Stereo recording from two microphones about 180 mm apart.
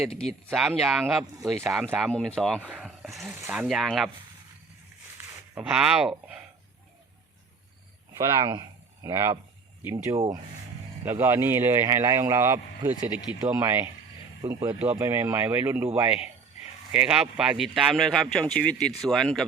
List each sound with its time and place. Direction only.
0.2 s speech: centre (ahead or behind)
5.1 s a sound: 5° right (ahead or behind)
8.4 s a man's voice: 25° right (ahead or behind); by 19.5 s centre (ahead or behind)